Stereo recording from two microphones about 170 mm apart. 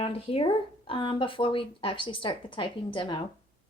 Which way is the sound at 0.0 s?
35° left (ahead or behind).